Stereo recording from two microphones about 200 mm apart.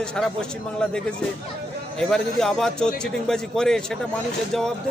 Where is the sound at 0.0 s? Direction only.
5° left (ahead or behind).